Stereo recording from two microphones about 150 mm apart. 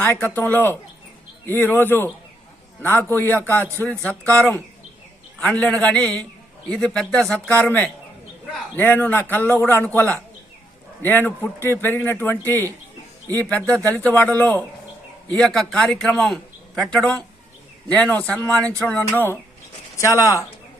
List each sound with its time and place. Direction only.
0.0 s a man's voice: 10° left (ahead or behind)